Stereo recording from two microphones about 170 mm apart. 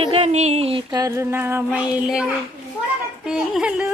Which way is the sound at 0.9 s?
15° right (ahead or behind).